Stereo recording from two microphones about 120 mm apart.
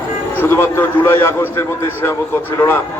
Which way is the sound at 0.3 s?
20° left (ahead or behind).